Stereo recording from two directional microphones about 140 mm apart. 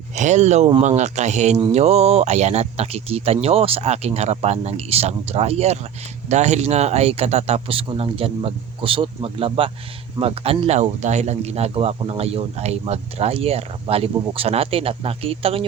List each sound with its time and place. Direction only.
0.2 s speech: 55° right (ahead or behind)